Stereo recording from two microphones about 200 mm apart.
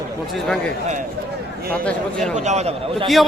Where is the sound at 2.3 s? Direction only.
35° right (ahead or behind).